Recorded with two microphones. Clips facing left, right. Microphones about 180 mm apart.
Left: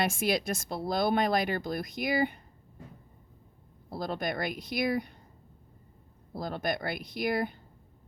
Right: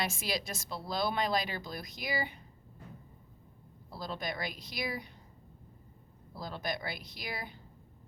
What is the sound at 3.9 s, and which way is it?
Speech, 55° left (ahead or behind).